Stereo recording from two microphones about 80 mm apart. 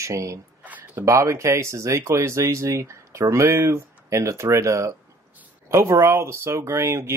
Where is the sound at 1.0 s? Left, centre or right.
Right.